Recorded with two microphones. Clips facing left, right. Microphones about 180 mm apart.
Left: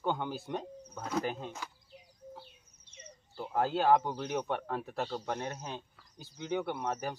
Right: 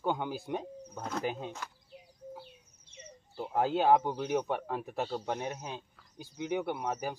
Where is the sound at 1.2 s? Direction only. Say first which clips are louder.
Right 1 dB; 15° right (ahead or behind).